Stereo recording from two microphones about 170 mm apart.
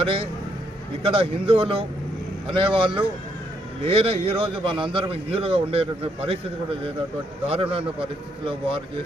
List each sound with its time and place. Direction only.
0.0 s a man's voice: 30° right (ahead or behind)
7.4 s a man's voice: 35° right (ahead or behind)